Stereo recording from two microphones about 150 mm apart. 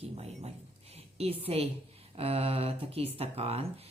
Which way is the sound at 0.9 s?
45° right (ahead or behind).